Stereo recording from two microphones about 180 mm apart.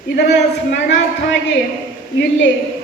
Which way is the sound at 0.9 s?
90° left.